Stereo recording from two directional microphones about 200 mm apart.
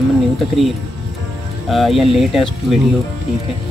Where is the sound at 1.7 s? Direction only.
Centre (ahead or behind).